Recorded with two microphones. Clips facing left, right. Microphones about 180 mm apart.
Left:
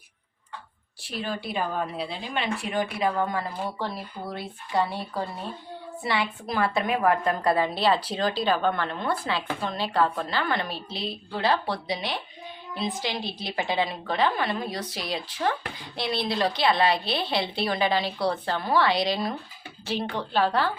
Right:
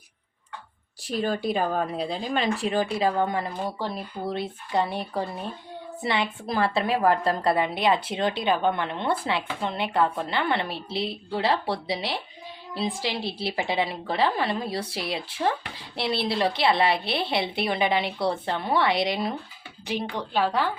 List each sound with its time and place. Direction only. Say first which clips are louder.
1.0 s a woman's voice: right 6 dB; 40° right (ahead or behind); by 20.7 s 10° right (ahead or behind)